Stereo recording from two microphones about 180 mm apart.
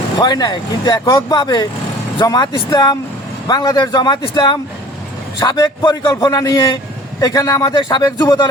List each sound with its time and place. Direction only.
0.2 s speech: 20° left (ahead or behind)